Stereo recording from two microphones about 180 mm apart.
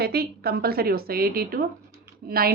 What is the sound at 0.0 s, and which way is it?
A woman's voice, 60° right (ahead or behind).